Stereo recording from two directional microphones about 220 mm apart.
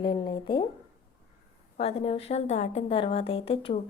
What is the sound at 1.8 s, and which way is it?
A woman's voice, 25° left (ahead or behind).